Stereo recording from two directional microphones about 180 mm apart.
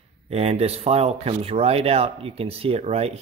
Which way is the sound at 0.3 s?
35° right (ahead or behind).